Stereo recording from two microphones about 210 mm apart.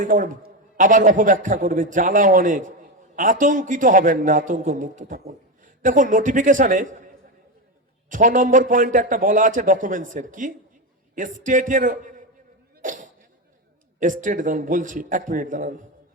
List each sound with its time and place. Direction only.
0.0 s a man's voice: 40° right (ahead or behind)
8.1 s a man's voice: 40° right (ahead or behind)
12.8 s a sound: 40° right (ahead or behind)
14.0 s a man's voice: 40° right (ahead or behind)